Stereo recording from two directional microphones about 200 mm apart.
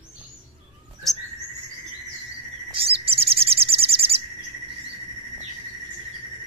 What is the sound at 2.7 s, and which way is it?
Bird, 30° right (ahead or behind).